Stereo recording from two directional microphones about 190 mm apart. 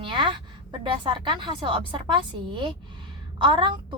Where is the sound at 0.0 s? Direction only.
25° right (ahead or behind).